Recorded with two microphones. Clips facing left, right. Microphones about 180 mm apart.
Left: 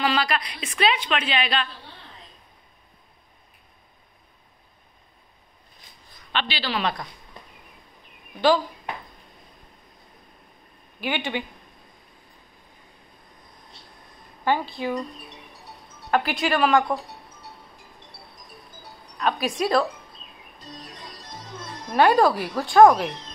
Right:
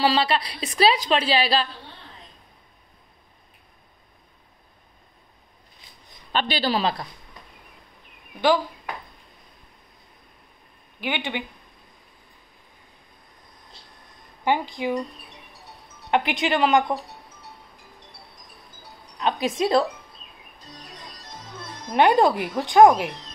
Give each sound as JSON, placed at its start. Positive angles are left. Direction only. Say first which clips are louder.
{"t": 0.0, "sound": "a woman's voice", "louder": "right 3 dB", "side_deg": -30}
{"t": 6.3, "sound": "a woman's voice", "louder": "right 4 dB", "side_deg": -45}
{"t": 11.0, "sound": "speech", "louder": "left 1 dB", "side_deg": -15}
{"t": 14.4, "sound": "speech", "louder": "right 1 dB", "side_deg": -15}
{"t": 16.1, "sound": "speech", "louder": "right 1 dB", "side_deg": -20}
{"t": 19.1, "sound": "speech", "louder": "right 1 dB", "side_deg": -20}
{"t": 21.8, "sound": "speech", "louder": "even", "side_deg": -20}